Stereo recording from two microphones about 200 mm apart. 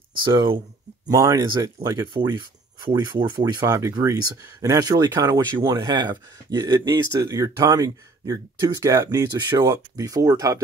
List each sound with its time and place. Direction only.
0.2 s speech: 25° right (ahead or behind)